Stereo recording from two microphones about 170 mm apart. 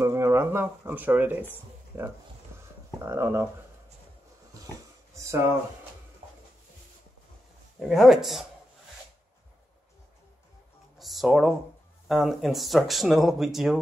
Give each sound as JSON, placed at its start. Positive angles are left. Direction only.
{"t": 0.0, "sound": "speech", "side_deg": -15}
{"t": 7.8, "sound": "speech", "side_deg": 0}
{"t": 11.0, "sound": "speech", "side_deg": 0}